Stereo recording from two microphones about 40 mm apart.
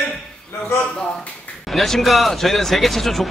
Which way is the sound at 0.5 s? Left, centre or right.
Left.